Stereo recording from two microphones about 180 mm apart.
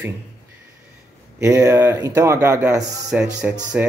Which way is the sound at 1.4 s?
20° right (ahead or behind).